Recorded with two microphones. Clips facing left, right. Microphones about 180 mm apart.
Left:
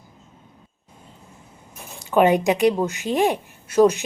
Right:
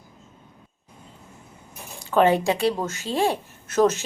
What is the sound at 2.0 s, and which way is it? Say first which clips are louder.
A woman's voice: left 2 dB; 15° left (ahead or behind).